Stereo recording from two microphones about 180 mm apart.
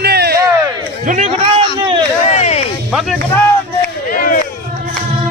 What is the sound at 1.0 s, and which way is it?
Speech, 45° right (ahead or behind).